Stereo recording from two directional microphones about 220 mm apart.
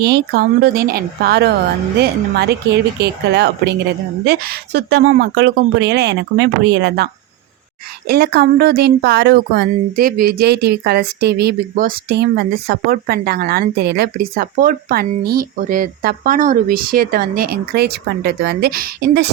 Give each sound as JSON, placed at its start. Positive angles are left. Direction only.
{"t": 0.0, "sound": "speech", "side_deg": -45}